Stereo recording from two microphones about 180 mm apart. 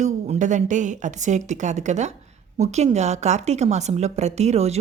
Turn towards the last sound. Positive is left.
turn(degrees=-35)  # may be behind; listen again after turning